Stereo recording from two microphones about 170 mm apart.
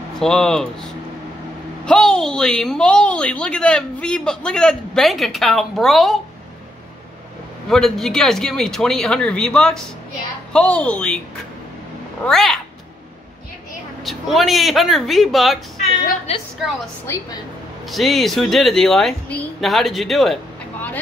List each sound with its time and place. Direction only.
0.2 s a woman's voice: 5° left (ahead or behind)
1.9 s a woman's voice: 5° left (ahead or behind)
7.7 s a woman's voice: 5° left (ahead or behind)
12.3 s a woman's voice: centre (ahead or behind)
14.0 s a woman's voice: centre (ahead or behind)
16.3 s a woman's voice: 40° left (ahead or behind)
17.0 s a woman's voice: 15° left (ahead or behind)
17.8 s a woman's voice: centre (ahead or behind)